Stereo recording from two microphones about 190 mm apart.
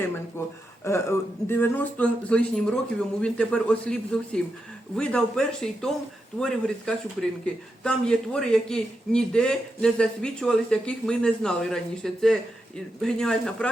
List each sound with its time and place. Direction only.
0.4 s a man's voice: 15° left (ahead or behind)